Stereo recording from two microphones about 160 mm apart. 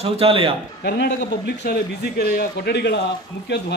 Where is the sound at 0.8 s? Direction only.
85° left.